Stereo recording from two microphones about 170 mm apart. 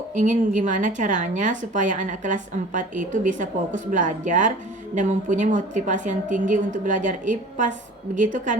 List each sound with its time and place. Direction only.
0.1 s a woman's voice: 45° right (ahead or behind)